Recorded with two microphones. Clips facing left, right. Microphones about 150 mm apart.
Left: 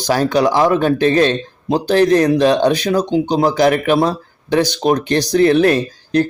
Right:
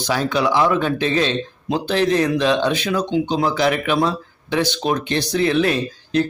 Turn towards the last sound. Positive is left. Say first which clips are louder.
# left 4 dB
turn(degrees=45)  # may be behind; listen again after turning